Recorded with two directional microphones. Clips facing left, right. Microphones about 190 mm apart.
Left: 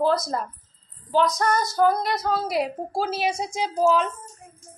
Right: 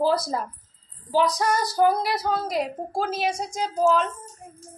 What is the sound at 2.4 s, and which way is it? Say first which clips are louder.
A woman's voice: left 1 dB; 10° left (ahead or behind).